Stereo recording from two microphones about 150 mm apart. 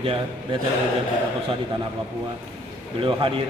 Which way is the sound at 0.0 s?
35° right (ahead or behind).